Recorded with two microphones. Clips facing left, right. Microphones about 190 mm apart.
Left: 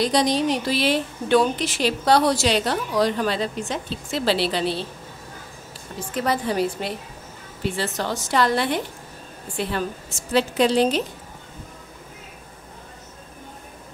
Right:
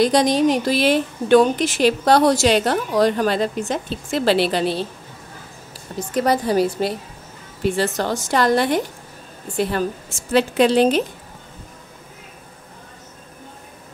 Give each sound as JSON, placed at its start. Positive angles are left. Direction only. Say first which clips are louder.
{"t": 0.0, "sound": "a woman's voice", "louder": "right 5 dB", "side_deg": -50}
{"t": 5.9, "sound": "a woman's voice", "louder": "right 5 dB", "side_deg": -40}
{"t": 10.3, "sound": "a woman's voice", "louder": "right 3 dB", "side_deg": -60}